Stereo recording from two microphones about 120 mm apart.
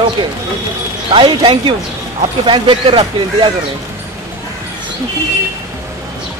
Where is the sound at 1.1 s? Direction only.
45° right (ahead or behind).